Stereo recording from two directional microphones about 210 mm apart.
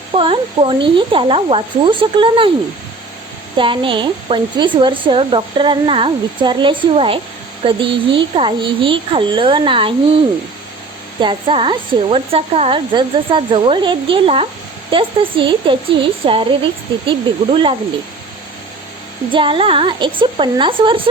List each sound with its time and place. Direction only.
0.1 s speech: 25° right (ahead or behind)
3.6 s speech: 25° right (ahead or behind)
11.2 s speech: 25° right (ahead or behind)
19.3 s speech: 25° right (ahead or behind)